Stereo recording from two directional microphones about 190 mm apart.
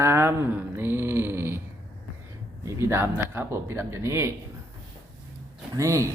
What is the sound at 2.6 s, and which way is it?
Speech, 15° right (ahead or behind).